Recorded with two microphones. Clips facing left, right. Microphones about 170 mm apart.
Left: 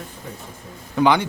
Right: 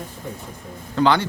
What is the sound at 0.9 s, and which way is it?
Speech, 15° left (ahead or behind).